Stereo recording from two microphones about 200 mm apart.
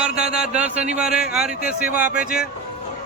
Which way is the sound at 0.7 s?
35° right (ahead or behind).